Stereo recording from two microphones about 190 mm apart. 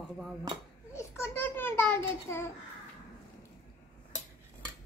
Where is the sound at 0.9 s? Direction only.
10° left (ahead or behind).